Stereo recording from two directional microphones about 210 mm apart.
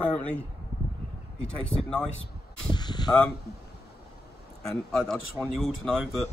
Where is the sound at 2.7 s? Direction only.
20° left (ahead or behind).